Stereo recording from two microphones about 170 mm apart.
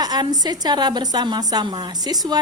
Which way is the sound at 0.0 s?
25° right (ahead or behind).